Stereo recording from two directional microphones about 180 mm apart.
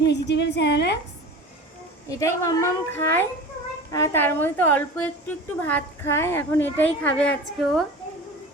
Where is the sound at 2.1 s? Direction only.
15° left (ahead or behind); by 7.8 s centre (ahead or behind).